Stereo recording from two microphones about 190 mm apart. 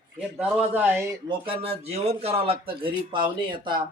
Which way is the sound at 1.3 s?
30° right (ahead or behind).